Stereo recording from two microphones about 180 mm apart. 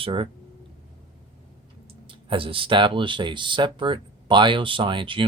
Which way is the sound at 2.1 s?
30° right (ahead or behind).